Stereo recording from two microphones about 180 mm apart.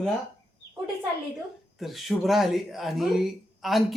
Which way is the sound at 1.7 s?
Centre (ahead or behind).